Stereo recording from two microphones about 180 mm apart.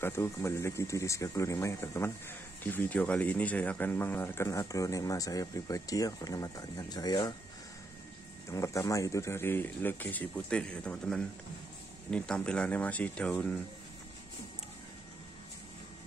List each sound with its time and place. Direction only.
0.0 s speech: 15° left (ahead or behind)
8.5 s speech: 15° left (ahead or behind)